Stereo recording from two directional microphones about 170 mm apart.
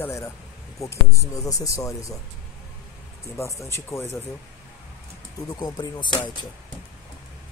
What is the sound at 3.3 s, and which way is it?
Speech, 15° left (ahead or behind).